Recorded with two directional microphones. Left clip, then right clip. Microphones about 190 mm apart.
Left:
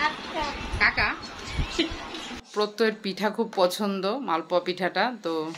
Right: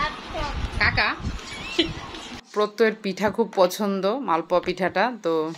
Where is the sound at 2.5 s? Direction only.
15° right (ahead or behind).